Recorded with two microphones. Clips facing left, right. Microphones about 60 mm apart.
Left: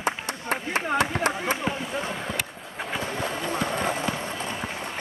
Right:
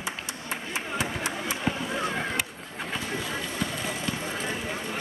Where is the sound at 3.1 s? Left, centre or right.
Left.